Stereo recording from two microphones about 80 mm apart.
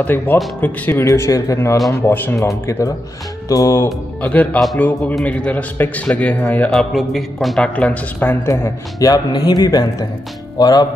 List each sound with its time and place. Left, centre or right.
0.0 s a man's voice: left
1.0 s speech: left
2.0 s a man's voice: left
2.4 s speech: left
3.4 s music: left
3.8 s a man's voice: centre
6.7 s a man's voice: centre
7.7 s a man's voice: centre
8.5 s speech: left
9.1 s speech: left